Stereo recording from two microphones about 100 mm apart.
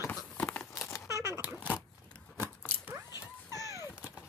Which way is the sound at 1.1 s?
30° right (ahead or behind).